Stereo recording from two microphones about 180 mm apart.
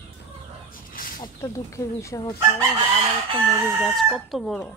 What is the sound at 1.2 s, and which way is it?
Speech, 15° left (ahead or behind).